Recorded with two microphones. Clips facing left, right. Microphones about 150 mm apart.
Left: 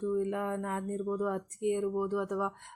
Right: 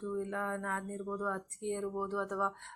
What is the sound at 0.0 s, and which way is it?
Speech, 15° left (ahead or behind).